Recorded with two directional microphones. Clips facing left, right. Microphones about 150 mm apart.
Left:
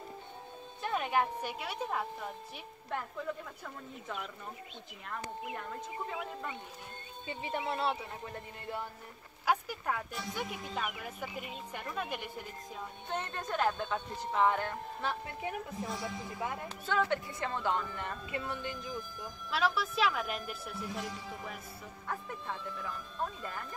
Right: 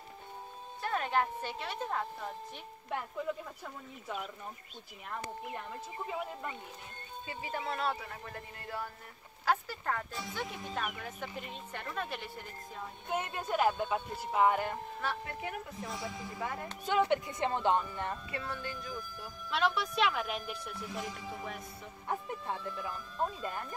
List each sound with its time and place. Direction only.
0.8 s speech: 10° left (ahead or behind)
2.9 s a woman's voice: 10° right (ahead or behind)
7.2 s speech: 25° left (ahead or behind)
10.4 s speech: centre (ahead or behind)
13.1 s speech: 10° right (ahead or behind)
15.9 s a woman's voice: centre (ahead or behind)
16.8 s speech: 15° right (ahead or behind)
18.3 s speech: 20° left (ahead or behind)
19.5 s a woman's voice: centre (ahead or behind)
22.0 s speech: 20° right (ahead or behind)